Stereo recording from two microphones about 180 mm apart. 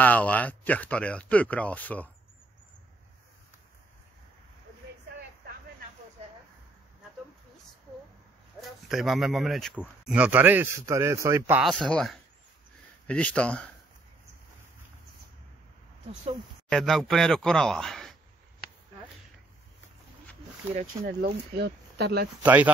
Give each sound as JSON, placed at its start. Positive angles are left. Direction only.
{"t": 0.0, "sound": "speech", "side_deg": 10}
{"t": 8.5, "sound": "speech", "side_deg": 0}
{"t": 11.6, "sound": "speech", "side_deg": 0}
{"t": 16.6, "sound": "speech", "side_deg": 5}
{"t": 21.0, "sound": "speech", "side_deg": -65}
{"t": 22.4, "sound": "speech", "side_deg": -10}